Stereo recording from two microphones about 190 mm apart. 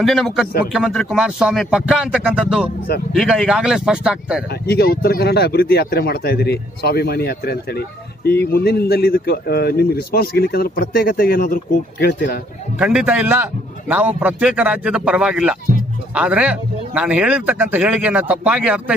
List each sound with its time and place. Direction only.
0.0 s a man's voice: centre (ahead or behind)
4.6 s a man's voice: 55° left (ahead or behind)
12.7 s a man's voice: 5° right (ahead or behind)